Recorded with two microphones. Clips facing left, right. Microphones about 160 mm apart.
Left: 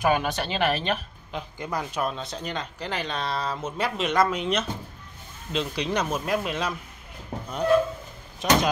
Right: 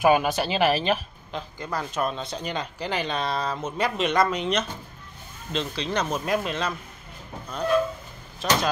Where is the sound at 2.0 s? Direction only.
Centre (ahead or behind).